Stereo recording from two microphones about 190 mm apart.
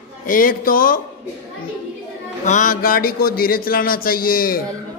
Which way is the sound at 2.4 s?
45° left (ahead or behind).